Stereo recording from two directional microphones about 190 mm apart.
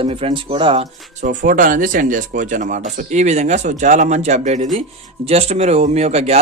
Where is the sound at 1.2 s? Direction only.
45° right (ahead or behind).